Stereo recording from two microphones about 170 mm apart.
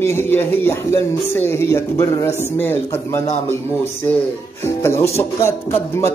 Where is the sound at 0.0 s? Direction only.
15° left (ahead or behind).